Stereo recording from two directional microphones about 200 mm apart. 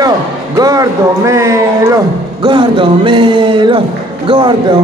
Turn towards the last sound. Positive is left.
turn(degrees=-25)  # may be behind; listen again after turning